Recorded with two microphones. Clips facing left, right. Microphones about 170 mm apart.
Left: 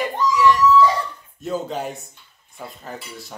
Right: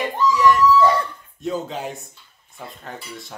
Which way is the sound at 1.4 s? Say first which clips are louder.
Left 1 dB; centre (ahead or behind).